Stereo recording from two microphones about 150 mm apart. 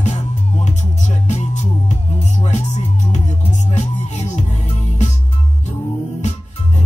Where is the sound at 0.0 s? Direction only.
50° left (ahead or behind).